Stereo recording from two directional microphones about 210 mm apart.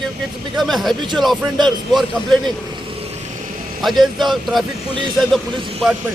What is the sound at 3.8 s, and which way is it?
Speech, centre (ahead or behind).